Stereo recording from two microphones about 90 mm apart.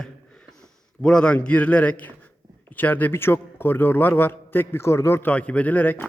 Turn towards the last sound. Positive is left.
turn(degrees=20)  # may be behind; listen again after turning